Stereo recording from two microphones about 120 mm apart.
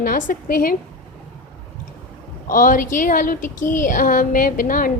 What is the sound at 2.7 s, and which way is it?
A woman's voice, 90° left.